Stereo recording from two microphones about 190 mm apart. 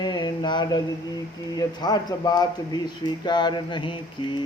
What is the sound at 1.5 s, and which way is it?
A man's voice, 20° left (ahead or behind).